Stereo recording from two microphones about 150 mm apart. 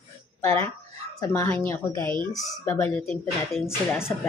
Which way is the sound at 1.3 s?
15° left (ahead or behind).